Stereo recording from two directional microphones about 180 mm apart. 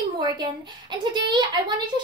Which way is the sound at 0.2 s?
25° right (ahead or behind).